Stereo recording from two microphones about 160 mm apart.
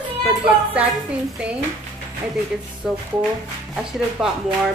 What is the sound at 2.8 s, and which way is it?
A woman's voice, centre (ahead or behind).